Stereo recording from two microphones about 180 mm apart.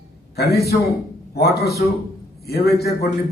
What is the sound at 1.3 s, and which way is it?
A man's voice, 60° left (ahead or behind).